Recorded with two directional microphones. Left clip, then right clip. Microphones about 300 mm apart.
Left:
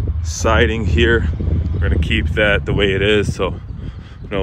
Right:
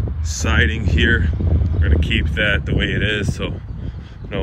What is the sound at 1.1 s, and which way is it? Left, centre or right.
Speech, centre.